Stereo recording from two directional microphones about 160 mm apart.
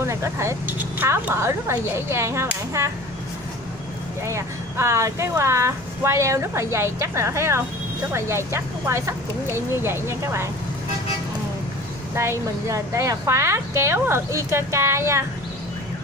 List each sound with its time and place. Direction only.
0.0 s speech: 15° right (ahead or behind)
4.3 s speech: 20° right (ahead or behind)
12.2 s speech: 20° right (ahead or behind)